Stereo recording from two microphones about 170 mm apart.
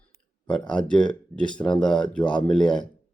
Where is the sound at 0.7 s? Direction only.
5° left (ahead or behind).